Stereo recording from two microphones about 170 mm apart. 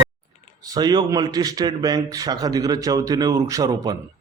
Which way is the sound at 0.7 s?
25° right (ahead or behind).